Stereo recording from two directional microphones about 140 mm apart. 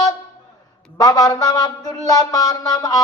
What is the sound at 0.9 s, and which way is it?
Speech, 25° left (ahead or behind).